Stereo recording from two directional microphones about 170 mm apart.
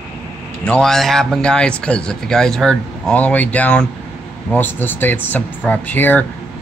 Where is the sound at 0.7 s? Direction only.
5° left (ahead or behind).